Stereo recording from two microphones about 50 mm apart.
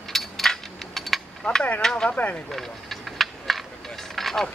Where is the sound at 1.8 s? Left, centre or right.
Centre.